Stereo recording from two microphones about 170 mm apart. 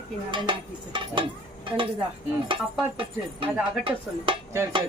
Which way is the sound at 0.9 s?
30° right (ahead or behind).